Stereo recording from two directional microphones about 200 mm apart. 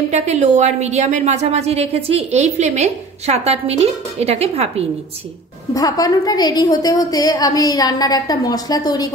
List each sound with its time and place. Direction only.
0.1 s a woman's voice: 35° right (ahead or behind)
5.8 s a woman's voice: 20° left (ahead or behind)